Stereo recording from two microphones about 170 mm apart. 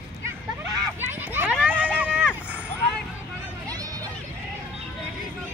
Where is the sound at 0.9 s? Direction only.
10° right (ahead or behind).